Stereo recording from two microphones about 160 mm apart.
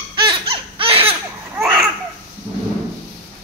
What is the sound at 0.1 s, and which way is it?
Baby cry, 30° right (ahead or behind).